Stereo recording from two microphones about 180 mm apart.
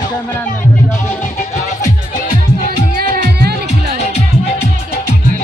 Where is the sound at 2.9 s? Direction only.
60° right (ahead or behind).